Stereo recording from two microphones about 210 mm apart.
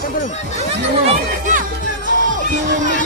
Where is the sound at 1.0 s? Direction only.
35° right (ahead or behind).